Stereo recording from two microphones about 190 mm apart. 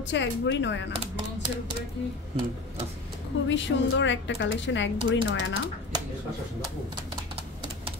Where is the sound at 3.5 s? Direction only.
70° left (ahead or behind).